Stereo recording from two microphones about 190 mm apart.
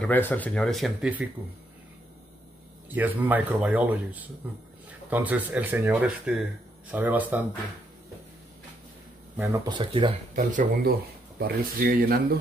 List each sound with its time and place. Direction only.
0.0 s speech: 10° left (ahead or behind); by 1.3 s 5° right (ahead or behind)
2.9 s speech: 10° right (ahead or behind)
9.4 s speech: 15° right (ahead or behind)
9.8 s speech: 25° right (ahead or behind)
10.3 s speech: 40° right (ahead or behind)
11.3 s speech: 55° right (ahead or behind)